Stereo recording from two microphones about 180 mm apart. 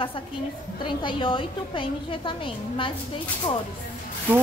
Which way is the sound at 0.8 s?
30° left (ahead or behind).